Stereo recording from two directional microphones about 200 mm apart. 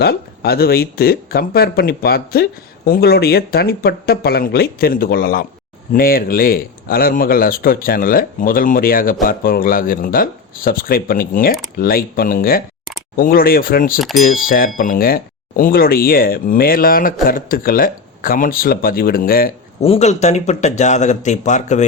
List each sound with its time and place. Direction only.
0.0 s speech: 50° left (ahead or behind)
19.8 s speech: 30° left (ahead or behind)